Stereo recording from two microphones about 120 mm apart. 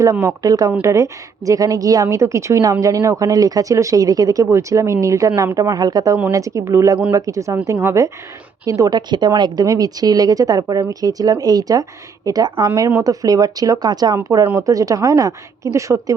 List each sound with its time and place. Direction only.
0.0 s speech: 25° right (ahead or behind)